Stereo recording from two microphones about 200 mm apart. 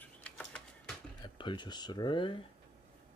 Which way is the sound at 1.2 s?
25° left (ahead or behind).